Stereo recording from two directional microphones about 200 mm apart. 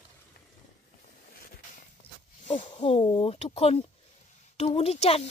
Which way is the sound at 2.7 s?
30° left (ahead or behind).